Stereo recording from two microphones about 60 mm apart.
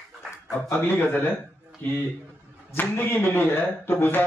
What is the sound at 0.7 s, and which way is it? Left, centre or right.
Speech, left.